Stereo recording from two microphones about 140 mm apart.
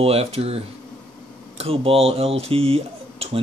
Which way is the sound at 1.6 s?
45° right (ahead or behind).